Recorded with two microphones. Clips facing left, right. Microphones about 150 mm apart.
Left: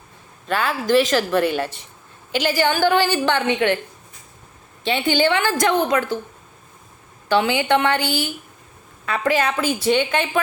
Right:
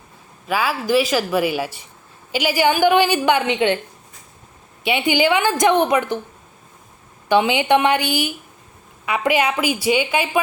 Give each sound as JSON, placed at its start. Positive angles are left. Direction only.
{"t": 0.4, "sound": "speech", "side_deg": -5}
{"t": 4.8, "sound": "speech", "side_deg": -10}
{"t": 7.3, "sound": "speech", "side_deg": -15}